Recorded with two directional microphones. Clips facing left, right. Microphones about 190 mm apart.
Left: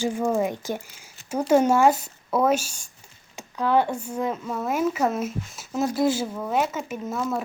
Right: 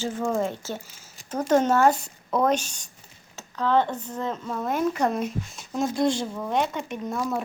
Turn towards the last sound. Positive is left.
turn(degrees=5)  # may be behind; listen again after turning